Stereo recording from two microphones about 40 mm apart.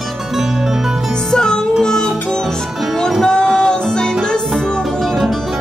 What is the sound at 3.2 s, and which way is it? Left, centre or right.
Music, centre.